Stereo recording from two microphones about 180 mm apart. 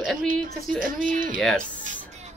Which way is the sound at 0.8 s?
50° right (ahead or behind).